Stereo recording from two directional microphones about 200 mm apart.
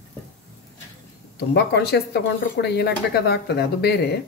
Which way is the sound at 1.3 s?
55° left (ahead or behind).